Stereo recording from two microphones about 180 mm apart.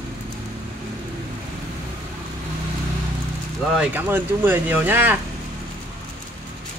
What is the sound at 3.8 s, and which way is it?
Speech, 10° right (ahead or behind).